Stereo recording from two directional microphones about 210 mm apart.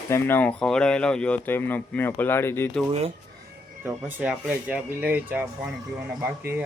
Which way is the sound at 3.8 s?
5° right (ahead or behind).